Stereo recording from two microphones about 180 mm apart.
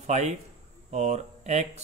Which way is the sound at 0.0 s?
40° right (ahead or behind).